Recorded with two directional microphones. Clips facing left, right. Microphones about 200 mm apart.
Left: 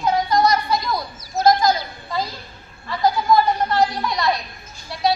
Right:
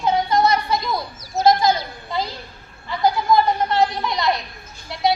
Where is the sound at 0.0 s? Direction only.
25° right (ahead or behind).